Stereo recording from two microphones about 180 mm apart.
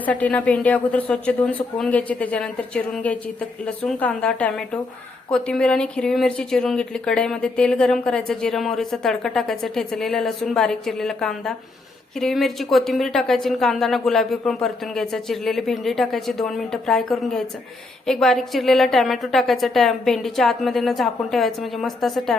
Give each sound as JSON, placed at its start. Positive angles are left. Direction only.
{"t": 0.0, "sound": "a woman's voice", "side_deg": 10}